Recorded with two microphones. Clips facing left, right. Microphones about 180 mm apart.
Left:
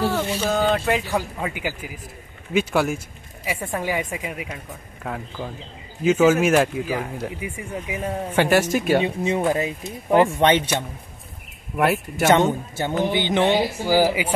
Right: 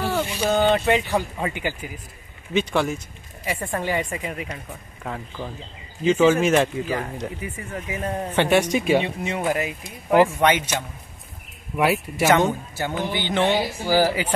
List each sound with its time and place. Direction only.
0.0 s speech: 10° right (ahead or behind)
0.5 s a man's voice: centre (ahead or behind)
9.0 s speech: 20° left (ahead or behind)
11.7 s a man's voice: centre (ahead or behind)
12.3 s speech: 25° left (ahead or behind)